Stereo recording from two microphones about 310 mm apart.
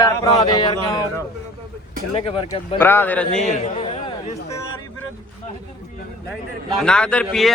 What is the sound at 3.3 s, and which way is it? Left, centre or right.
A man's voice, left.